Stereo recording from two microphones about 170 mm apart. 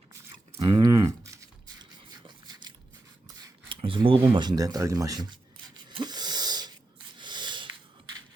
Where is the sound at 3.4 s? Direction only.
30° right (ahead or behind).